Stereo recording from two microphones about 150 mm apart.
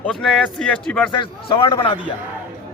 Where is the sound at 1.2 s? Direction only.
35° left (ahead or behind).